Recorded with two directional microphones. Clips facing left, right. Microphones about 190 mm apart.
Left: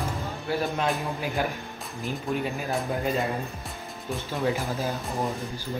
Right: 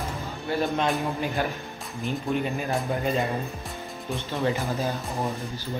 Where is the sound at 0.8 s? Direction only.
Centre (ahead or behind).